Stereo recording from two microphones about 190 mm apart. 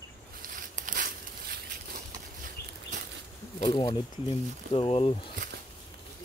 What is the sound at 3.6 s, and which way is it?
Speech, 25° left (ahead or behind).